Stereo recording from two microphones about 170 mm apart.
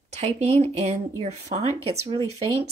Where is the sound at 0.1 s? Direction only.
40° right (ahead or behind).